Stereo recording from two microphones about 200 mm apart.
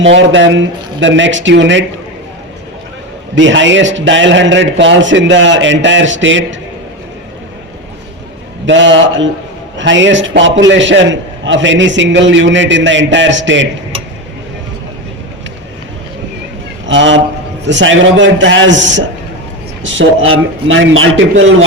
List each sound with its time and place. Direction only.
0.0 s a man's voice: 65° right (ahead or behind)
3.3 s a man's voice: 65° right (ahead or behind)
8.6 s a man's voice: 65° right (ahead or behind)
16.8 s a man's voice: 65° right (ahead or behind)